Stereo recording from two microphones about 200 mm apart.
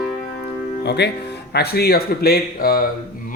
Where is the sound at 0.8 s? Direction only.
55° left (ahead or behind).